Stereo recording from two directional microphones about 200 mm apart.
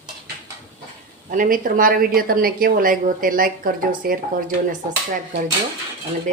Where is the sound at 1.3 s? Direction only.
45° right (ahead or behind).